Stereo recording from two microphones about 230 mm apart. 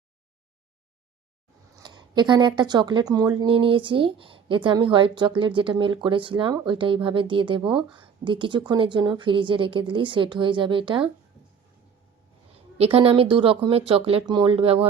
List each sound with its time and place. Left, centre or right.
1.8 s speech: centre
12.7 s speech: right